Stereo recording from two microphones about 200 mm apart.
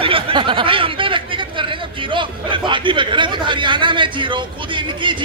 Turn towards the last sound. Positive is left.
turn(degrees=-25)  # may be behind; listen again after turning